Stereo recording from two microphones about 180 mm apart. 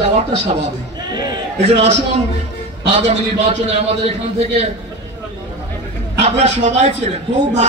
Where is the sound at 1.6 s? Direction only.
35° right (ahead or behind).